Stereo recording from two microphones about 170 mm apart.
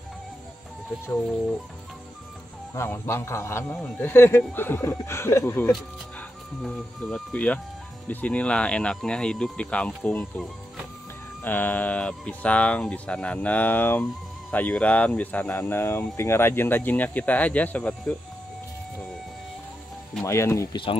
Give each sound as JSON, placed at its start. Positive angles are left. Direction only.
{"t": 2.7, "sound": "speech", "side_deg": 15}
{"t": 6.6, "sound": "speech", "side_deg": 5}
{"t": 20.2, "sound": "speech", "side_deg": 15}